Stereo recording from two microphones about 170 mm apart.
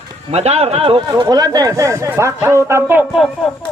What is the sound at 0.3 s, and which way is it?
Speech, 40° right (ahead or behind).